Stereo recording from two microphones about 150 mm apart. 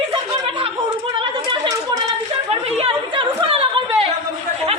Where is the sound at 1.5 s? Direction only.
25° right (ahead or behind).